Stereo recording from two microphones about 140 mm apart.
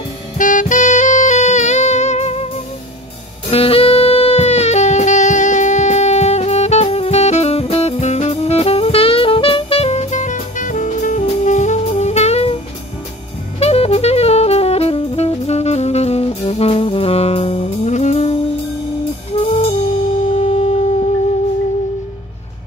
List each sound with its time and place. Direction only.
0.4 s saxophone: 65° left (ahead or behind)
3.4 s music: 45° left (ahead or behind)
13.6 s saxophone: 50° left (ahead or behind)
19.3 s music: 45° left (ahead or behind)